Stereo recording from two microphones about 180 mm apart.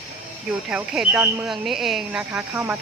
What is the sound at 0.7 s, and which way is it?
Speech, 5° right (ahead or behind).